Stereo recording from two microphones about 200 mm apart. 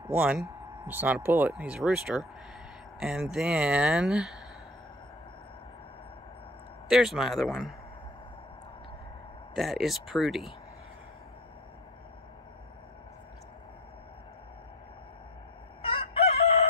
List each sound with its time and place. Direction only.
0.1 s speech: 5° right (ahead or behind)
6.9 s speech: centre (ahead or behind)
9.6 s speech: centre (ahead or behind)
15.8 s chicken: 30° left (ahead or behind)